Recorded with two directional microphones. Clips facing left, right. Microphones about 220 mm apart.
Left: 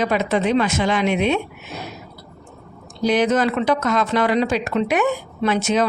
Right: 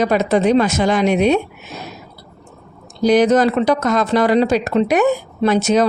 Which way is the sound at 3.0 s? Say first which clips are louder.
Right 5 dB; 40° right (ahead or behind).